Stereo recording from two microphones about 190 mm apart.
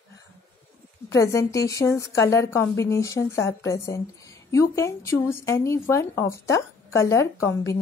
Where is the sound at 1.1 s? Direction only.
15° left (ahead or behind).